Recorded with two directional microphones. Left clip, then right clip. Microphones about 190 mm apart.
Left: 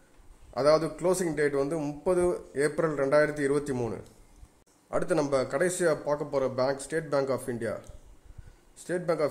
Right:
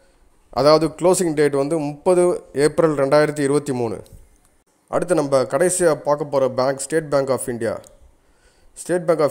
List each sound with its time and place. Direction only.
0.5 s a man's voice: 40° right (ahead or behind)
1.6 s a man's voice: 25° right (ahead or behind)